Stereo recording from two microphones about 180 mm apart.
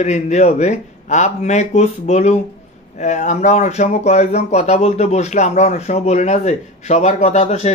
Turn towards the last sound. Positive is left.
turn(degrees=35)  # may be behind; listen again after turning